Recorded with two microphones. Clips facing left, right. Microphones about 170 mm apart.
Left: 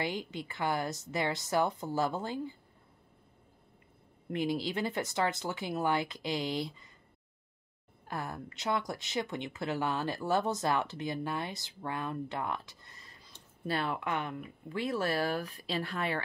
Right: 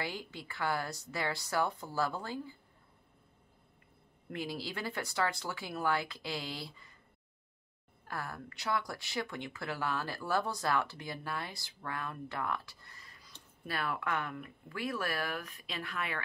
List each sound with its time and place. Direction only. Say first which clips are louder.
0.0 s speech: left 5 dB; 20° left (ahead or behind)
4.3 s speech: left 7 dB; 20° left (ahead or behind)
8.1 s speech: left 3 dB; 20° left (ahead or behind)